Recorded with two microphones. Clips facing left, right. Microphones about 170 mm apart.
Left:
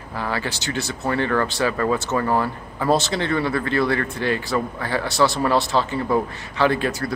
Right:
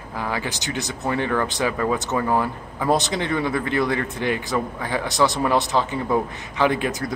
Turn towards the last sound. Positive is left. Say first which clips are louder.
# left 1 dB
turn(degrees=-15)  # may be behind; listen again after turning